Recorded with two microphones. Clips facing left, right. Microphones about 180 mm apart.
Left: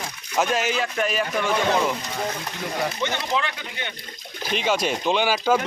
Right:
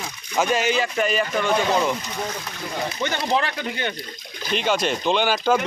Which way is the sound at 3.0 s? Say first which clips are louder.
Right 2 dB; 40° right (ahead or behind).